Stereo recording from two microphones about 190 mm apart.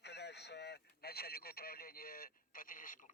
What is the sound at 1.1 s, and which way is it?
Radio, 55° left (ahead or behind).